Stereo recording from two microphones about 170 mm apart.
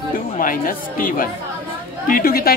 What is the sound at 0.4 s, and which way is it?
Speech, 55° left (ahead or behind).